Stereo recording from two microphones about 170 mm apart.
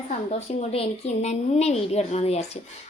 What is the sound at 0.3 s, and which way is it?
A woman's voice, 35° left (ahead or behind).